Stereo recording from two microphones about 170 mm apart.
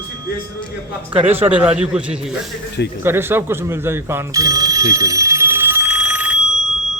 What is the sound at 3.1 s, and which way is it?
Telephone bell ringing, 15° right (ahead or behind).